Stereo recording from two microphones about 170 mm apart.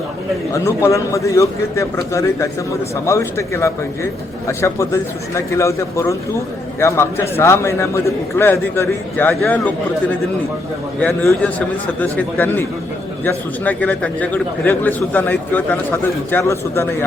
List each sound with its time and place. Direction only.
0.5 s a man's voice: 20° left (ahead or behind)